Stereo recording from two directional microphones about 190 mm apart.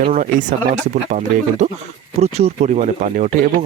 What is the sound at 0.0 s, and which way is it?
Speech, 40° right (ahead or behind).